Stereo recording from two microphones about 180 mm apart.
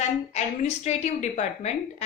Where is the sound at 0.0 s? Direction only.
40° left (ahead or behind).